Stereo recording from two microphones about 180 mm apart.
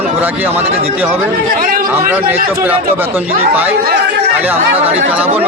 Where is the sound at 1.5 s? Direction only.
50° right (ahead or behind).